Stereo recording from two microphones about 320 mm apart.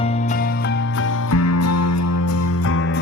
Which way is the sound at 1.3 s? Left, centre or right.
Left.